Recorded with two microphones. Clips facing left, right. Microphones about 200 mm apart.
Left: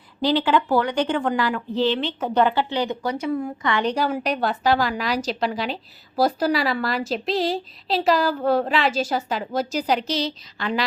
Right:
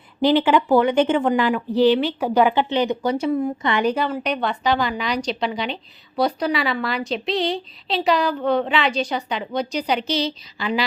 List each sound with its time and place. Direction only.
0.2 s speech: 20° right (ahead or behind)
3.8 s a woman's voice: centre (ahead or behind)